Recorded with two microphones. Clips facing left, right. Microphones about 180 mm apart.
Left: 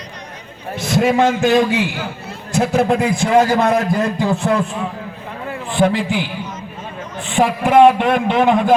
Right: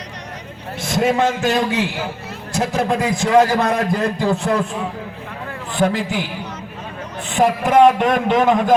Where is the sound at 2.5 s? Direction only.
40° right (ahead or behind).